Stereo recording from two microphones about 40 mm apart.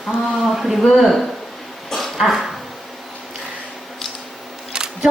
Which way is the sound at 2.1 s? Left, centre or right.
Centre.